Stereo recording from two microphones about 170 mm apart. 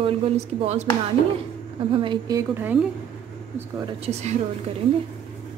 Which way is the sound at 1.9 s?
30° right (ahead or behind).